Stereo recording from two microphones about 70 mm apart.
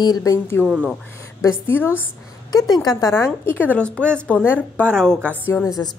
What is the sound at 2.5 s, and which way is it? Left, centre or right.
Speech, left.